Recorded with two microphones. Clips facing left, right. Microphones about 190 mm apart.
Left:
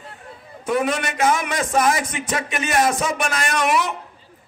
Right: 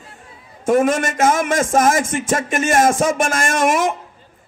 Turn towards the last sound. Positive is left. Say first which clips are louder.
# right 4 dB
turn(degrees=-45)  # may be behind; listen again after turning